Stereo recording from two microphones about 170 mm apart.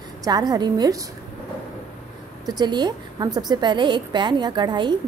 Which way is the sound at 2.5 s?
25° right (ahead or behind).